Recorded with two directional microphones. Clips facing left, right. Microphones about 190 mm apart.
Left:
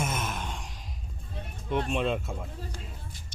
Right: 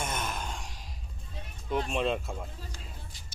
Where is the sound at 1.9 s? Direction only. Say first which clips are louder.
Left 1 dB; centre (ahead or behind).